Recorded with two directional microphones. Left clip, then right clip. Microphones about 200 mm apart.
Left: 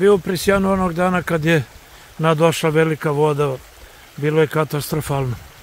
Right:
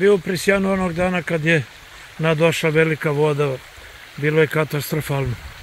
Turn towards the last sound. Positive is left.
turn(degrees=10)  # may be behind; listen again after turning